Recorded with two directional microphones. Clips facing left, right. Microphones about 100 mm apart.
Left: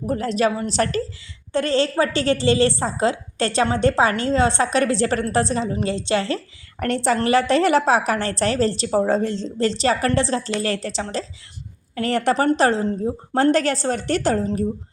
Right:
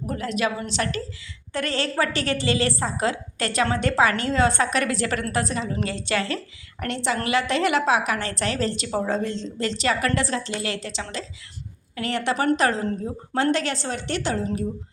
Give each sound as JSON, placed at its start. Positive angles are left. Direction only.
{"t": 0.0, "sound": "a woman's voice", "side_deg": 30}
{"t": 1.5, "sound": "a woman's voice", "side_deg": 30}
{"t": 12.5, "sound": "a woman's voice", "side_deg": 30}
{"t": 13.3, "sound": "a woman's voice", "side_deg": 40}